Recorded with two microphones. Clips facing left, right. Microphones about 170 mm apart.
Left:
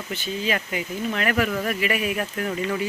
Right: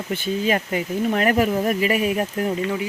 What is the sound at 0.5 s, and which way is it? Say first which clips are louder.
Speech: right 5 dB; 40° right (ahead or behind).